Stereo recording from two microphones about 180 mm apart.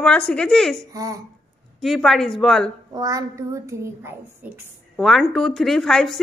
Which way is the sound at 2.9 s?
20° right (ahead or behind).